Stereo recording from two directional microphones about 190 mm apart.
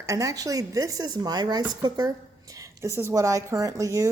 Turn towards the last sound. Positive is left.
turn(degrees=-15)  # may be behind; listen again after turning